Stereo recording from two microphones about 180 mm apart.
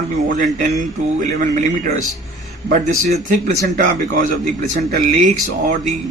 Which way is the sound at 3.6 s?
50° right (ahead or behind).